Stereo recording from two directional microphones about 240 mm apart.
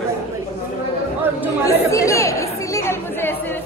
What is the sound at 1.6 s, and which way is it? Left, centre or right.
Chatter, centre.